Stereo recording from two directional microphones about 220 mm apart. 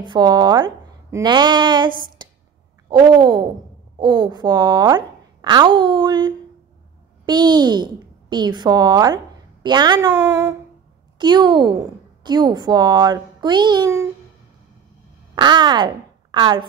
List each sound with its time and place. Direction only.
0.0 s a child's voice: 20° right (ahead or behind)
15.3 s a woman's voice: 20° right (ahead or behind)